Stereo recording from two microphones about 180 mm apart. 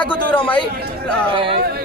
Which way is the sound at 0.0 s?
25° left (ahead or behind).